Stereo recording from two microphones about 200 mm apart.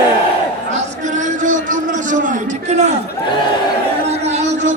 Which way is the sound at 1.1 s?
40° right (ahead or behind).